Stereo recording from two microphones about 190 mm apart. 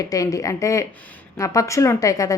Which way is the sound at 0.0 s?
20° left (ahead or behind).